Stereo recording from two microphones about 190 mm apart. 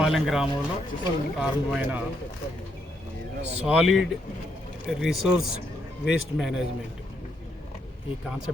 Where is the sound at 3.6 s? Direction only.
5° right (ahead or behind).